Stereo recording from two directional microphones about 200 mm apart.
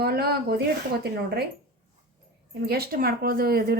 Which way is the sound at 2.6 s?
50° right (ahead or behind).